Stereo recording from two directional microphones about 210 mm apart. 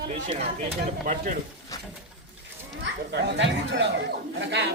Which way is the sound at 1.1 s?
40° right (ahead or behind).